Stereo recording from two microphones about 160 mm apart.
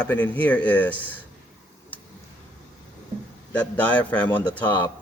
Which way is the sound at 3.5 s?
10° left (ahead or behind).